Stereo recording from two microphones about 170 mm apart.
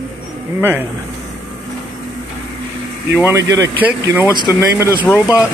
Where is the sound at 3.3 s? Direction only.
15° right (ahead or behind).